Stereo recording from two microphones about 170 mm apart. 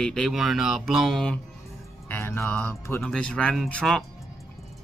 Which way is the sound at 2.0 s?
15° left (ahead or behind).